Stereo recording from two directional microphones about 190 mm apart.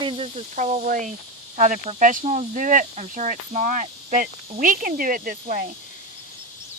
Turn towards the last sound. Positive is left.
turn(degrees=-45)  # may be behind; listen again after turning